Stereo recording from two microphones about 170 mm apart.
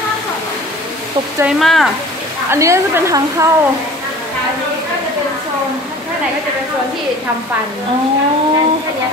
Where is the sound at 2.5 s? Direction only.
15° right (ahead or behind).